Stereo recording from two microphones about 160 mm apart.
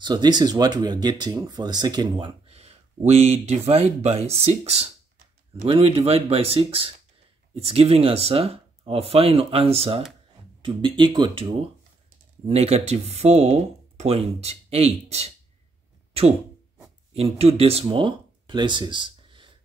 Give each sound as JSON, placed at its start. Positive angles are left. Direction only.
{"t": 0.0, "sound": "speech", "side_deg": -25}
{"t": 12.4, "sound": "speech", "side_deg": -40}
{"t": 16.1, "sound": "a sound", "side_deg": -40}
{"t": 17.1, "sound": "speech", "side_deg": -40}